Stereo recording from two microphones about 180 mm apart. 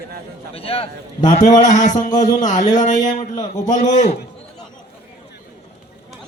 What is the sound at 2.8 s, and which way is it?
A man's voice, 45° left (ahead or behind).